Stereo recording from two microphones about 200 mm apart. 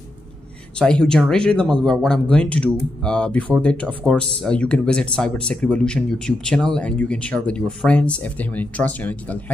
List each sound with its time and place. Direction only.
0.7 s speech: 5° left (ahead or behind)